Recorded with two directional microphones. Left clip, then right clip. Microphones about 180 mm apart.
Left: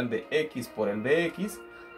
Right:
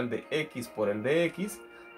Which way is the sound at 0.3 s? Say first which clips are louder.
Left 4 dB; 40° right (ahead or behind).